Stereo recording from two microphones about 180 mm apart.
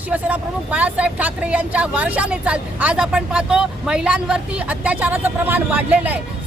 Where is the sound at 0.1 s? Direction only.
10° right (ahead or behind).